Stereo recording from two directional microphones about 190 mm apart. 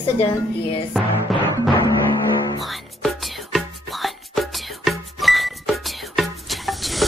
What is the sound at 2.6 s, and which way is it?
Music, centre (ahead or behind).